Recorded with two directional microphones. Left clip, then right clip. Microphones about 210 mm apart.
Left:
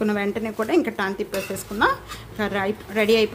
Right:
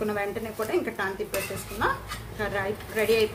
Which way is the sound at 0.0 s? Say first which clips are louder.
Left 5 dB; 50° left (ahead or behind).